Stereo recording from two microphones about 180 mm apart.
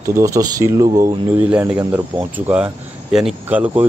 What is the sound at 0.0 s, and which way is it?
Speech, 20° right (ahead or behind).